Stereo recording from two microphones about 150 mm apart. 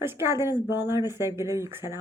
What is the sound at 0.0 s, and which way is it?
Speech, 15° right (ahead or behind).